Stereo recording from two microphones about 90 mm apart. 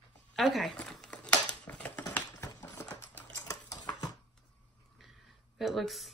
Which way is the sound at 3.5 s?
45° left (ahead or behind).